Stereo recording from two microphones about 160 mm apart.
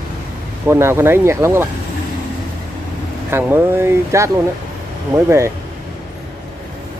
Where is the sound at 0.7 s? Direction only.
15° right (ahead or behind).